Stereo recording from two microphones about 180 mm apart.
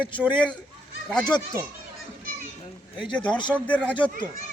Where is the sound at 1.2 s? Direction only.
25° left (ahead or behind).